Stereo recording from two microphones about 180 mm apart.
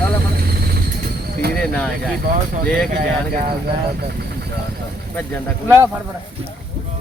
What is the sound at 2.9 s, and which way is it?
Speech, 55° right (ahead or behind).